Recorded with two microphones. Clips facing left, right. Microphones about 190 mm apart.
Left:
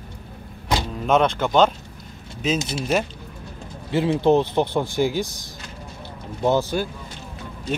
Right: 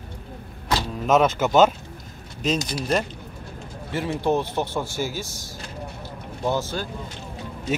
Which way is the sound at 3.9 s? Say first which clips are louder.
Left 6 dB; 20° left (ahead or behind).